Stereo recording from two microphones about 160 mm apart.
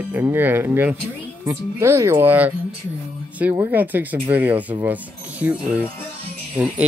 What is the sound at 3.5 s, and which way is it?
Speech, 10° right (ahead or behind).